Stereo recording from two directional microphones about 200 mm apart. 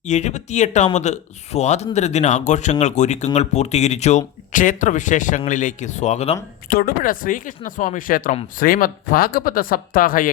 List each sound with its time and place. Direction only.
0.0 s speech: 35° left (ahead or behind)
6.7 s speech: 45° left (ahead or behind)